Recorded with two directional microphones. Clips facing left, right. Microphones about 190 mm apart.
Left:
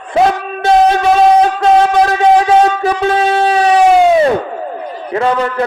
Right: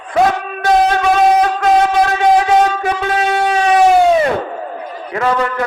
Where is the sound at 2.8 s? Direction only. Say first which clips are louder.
Left 4 dB; 35° left (ahead or behind).